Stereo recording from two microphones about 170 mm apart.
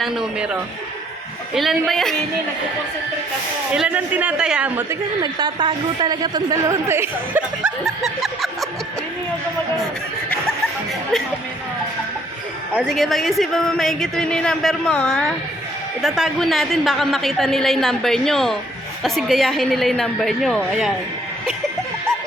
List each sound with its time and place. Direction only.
0.0 s a woman's voice: 5° right (ahead or behind)
3.7 s a woman's voice: 10° right (ahead or behind)
5.2 s a woman's voice: 25° right (ahead or behind); by 8.4 s centre (ahead or behind)
12.7 s a woman's voice: centre (ahead or behind)